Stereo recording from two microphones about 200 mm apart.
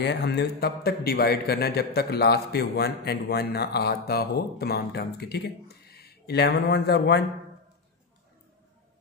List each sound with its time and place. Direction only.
0.0 s a man's voice: 60° left (ahead or behind)